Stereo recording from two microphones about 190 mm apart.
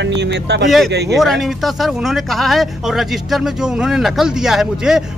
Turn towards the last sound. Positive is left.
turn(degrees=0)  # may be behind; listen again after turning